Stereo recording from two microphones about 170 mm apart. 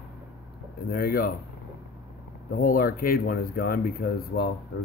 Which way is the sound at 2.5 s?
60° left (ahead or behind).